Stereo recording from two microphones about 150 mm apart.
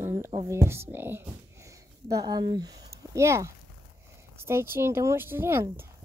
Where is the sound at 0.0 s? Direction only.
15° right (ahead or behind).